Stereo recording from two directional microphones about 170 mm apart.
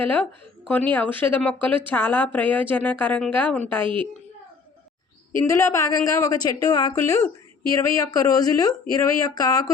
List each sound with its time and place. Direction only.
0.0 s a woman's voice: 10° left (ahead or behind)
3.8 s a child's voice: 30° right (ahead or behind)
5.4 s a woman's voice: 15° left (ahead or behind)